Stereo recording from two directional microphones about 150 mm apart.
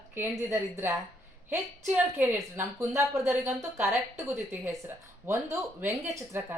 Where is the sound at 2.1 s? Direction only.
15° right (ahead or behind).